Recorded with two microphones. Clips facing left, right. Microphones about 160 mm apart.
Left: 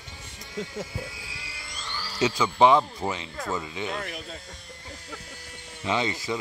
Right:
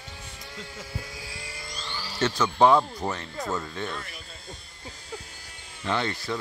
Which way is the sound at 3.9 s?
70° left (ahead or behind).